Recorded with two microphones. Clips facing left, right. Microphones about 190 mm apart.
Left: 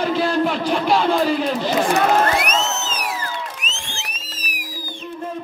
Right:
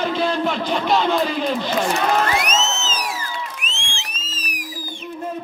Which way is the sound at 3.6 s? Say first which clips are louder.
Left 1 dB; 40° left (ahead or behind).